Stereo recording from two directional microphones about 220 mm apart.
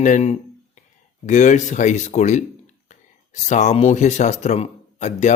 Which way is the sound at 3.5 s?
30° left (ahead or behind).